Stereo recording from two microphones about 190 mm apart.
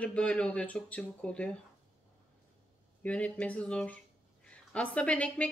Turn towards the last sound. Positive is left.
turn(degrees=5)  # may be behind; listen again after turning